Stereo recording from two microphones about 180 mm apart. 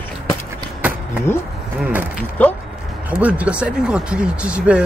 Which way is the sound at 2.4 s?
10° left (ahead or behind).